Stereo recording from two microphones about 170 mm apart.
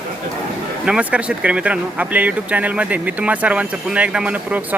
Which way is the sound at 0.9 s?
5° right (ahead or behind).